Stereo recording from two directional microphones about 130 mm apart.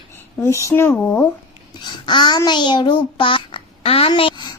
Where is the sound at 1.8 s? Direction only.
35° left (ahead or behind).